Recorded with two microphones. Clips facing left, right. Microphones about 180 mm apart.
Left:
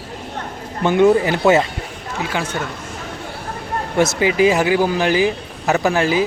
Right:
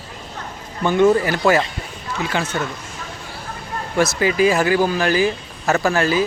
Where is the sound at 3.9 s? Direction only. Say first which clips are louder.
Left 1 dB; 20° left (ahead or behind).